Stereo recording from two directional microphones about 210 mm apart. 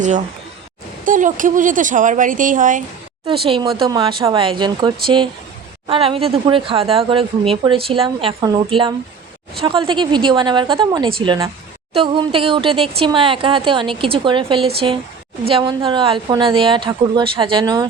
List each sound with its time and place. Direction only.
1.0 s speech: 40° right (ahead or behind)
3.2 s speech: 25° right (ahead or behind)